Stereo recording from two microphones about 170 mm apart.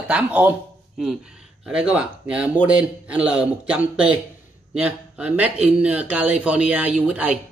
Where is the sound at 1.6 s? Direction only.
5° right (ahead or behind).